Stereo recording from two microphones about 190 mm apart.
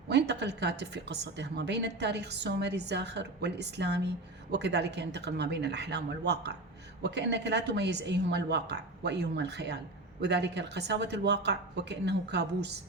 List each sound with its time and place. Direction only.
0.1 s a woman's voice: 60° right (ahead or behind)